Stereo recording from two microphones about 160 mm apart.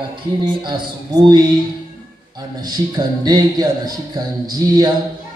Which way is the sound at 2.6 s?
25° right (ahead or behind).